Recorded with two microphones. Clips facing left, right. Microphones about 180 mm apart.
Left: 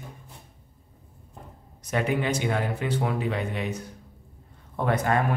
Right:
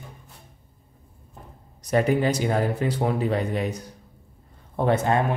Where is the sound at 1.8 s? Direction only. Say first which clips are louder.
Right 5 dB; 40° right (ahead or behind).